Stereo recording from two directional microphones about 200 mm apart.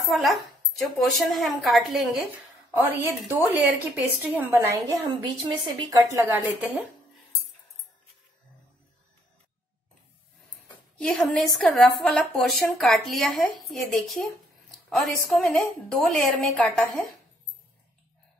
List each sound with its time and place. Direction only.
0.1 s a woman's voice: centre (ahead or behind)
11.0 s speech: 5° left (ahead or behind)